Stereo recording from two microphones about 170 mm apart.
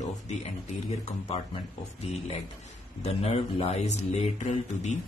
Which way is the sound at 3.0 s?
35° left (ahead or behind).